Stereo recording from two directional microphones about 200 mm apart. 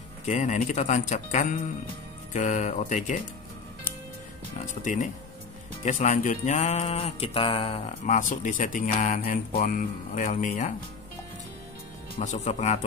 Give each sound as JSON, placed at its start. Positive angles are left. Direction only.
{"t": 0.3, "sound": "mantra", "side_deg": 40}
{"t": 4.6, "sound": "mantra", "side_deg": 40}
{"t": 12.2, "sound": "mantra", "side_deg": 35}